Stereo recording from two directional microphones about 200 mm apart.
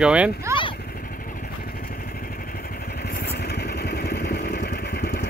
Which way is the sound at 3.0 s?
50° left (ahead or behind).